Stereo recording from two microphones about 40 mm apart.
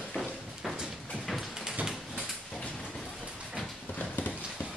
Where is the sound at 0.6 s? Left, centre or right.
Centre.